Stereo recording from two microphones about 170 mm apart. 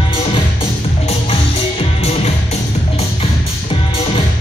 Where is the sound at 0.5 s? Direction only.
35° left (ahead or behind).